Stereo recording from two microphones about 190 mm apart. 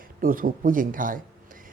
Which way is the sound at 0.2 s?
45° right (ahead or behind).